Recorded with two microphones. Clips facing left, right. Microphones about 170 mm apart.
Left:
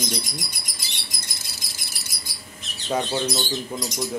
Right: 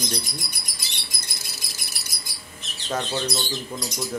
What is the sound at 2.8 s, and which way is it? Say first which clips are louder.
Speech: left 3 dB; 10° left (ahead or behind).